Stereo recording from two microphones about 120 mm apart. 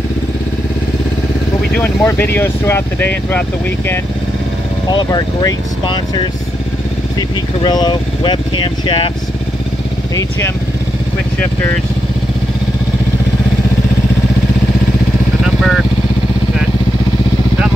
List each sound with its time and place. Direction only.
1.8 s speech: 20° left (ahead or behind)
4.9 s speech: 35° left (ahead or behind)
15.4 s vehicle: centre (ahead or behind)